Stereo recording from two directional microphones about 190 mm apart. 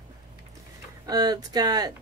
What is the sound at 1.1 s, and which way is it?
Speech, 20° right (ahead or behind).